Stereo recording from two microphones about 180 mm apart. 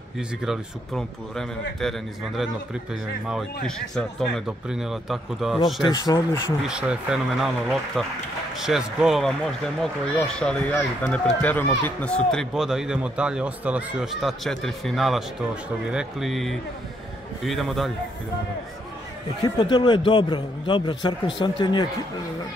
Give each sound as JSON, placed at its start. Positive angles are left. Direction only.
{"t": 0.5, "sound": "speech", "side_deg": 5}
{"t": 5.8, "sound": "a man's voice", "side_deg": 20}
{"t": 6.6, "sound": "speech", "side_deg": -5}
{"t": 19.4, "sound": "a man's voice", "side_deg": 25}